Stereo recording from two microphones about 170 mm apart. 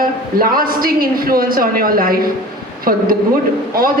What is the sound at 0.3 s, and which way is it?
A woman's voice, 60° right (ahead or behind).